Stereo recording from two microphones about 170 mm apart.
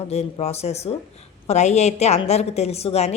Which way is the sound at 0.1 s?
40° left (ahead or behind).